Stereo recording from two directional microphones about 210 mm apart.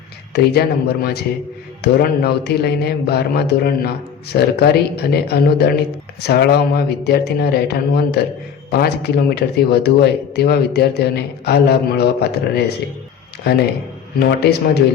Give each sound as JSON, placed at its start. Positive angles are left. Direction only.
{"t": 0.3, "sound": "speech", "side_deg": 50}
{"t": 14.2, "sound": "speech", "side_deg": 50}